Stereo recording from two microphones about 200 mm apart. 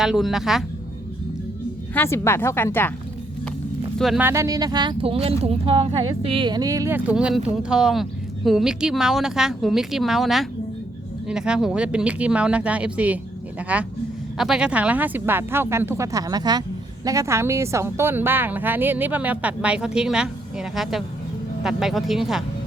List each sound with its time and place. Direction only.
0.0 s a woman's voice: centre (ahead or behind)
2.0 s speech: 10° left (ahead or behind)
3.9 s speech: centre (ahead or behind)
4.3 s a woman's voice: 15° right (ahead or behind)